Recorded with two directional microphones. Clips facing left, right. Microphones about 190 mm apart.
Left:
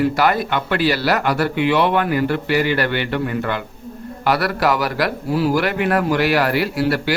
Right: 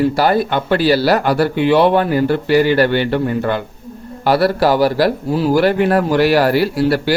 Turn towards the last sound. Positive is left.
turn(degrees=-35)  # may be behind; listen again after turning